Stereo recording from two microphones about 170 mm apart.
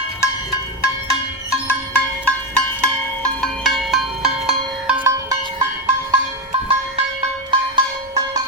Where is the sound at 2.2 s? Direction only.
5° left (ahead or behind).